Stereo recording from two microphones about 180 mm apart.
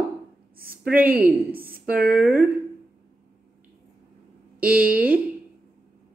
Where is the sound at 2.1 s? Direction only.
10° right (ahead or behind).